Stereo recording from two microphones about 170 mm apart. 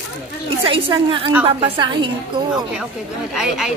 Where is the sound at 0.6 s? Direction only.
30° right (ahead or behind).